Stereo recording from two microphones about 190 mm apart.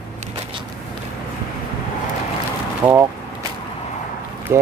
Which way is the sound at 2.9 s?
10° right (ahead or behind).